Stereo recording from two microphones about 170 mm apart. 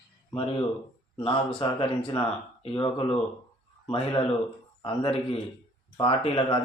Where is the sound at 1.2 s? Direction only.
35° left (ahead or behind).